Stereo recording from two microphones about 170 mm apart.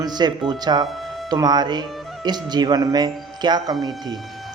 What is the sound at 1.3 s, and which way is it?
Speech, 25° right (ahead or behind).